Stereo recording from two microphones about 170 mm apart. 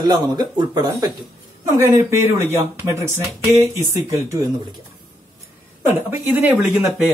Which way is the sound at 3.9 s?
15° right (ahead or behind).